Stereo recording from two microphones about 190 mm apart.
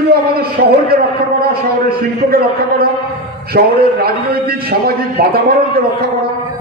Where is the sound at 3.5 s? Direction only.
55° right (ahead or behind).